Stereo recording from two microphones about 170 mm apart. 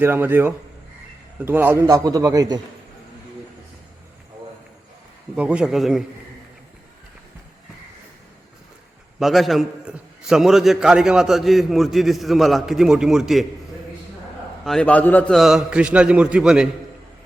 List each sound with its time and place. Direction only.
0.0 s a man's voice: 10° right (ahead or behind)
5.4 s a man's voice: 5° right (ahead or behind)
9.1 s a man's voice: centre (ahead or behind)
14.6 s a man's voice: 5° left (ahead or behind)